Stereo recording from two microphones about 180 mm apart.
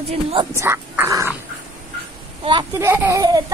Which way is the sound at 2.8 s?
15° right (ahead or behind).